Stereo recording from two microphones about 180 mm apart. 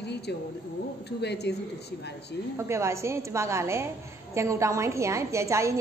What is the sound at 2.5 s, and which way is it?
A woman's voice, 15° right (ahead or behind).